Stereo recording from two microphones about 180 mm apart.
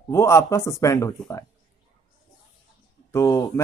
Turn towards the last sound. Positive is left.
turn(degrees=15)  # may be behind; listen again after turning